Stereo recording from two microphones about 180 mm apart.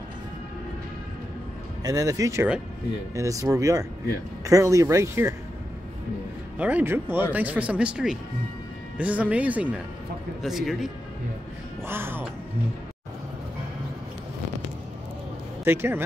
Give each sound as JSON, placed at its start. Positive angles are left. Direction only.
{"t": 1.8, "sound": "speech", "side_deg": -20}
{"t": 6.6, "sound": "speech", "side_deg": -10}
{"t": 11.9, "sound": "speech", "side_deg": -10}
{"t": 15.6, "sound": "speech", "side_deg": -10}